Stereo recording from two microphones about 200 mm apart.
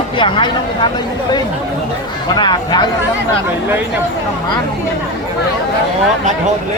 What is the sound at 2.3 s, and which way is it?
Speech, 20° left (ahead or behind).